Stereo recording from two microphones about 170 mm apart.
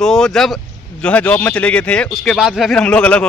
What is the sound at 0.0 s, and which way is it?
Speech, 5° left (ahead or behind).